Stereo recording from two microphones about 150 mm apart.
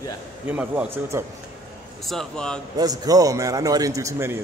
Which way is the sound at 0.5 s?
10° right (ahead or behind).